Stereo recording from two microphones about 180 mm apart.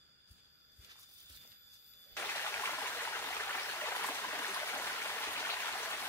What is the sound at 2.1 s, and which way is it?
Stream, 15° left (ahead or behind).